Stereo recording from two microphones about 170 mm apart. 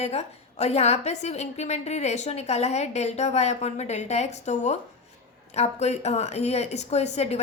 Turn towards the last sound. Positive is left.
turn(degrees=40)  # may be behind; listen again after turning